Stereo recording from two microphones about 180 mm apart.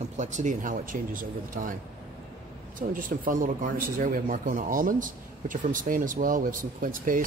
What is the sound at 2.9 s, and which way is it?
Speech, 50° right (ahead or behind).